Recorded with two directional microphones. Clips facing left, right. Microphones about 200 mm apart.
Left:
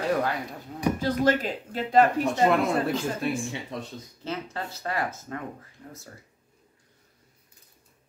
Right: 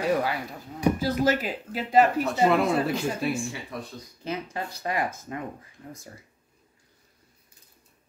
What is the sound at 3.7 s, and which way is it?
Speech, 20° left (ahead or behind).